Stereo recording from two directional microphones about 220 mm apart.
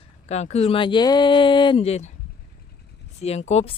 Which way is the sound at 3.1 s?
30° left (ahead or behind).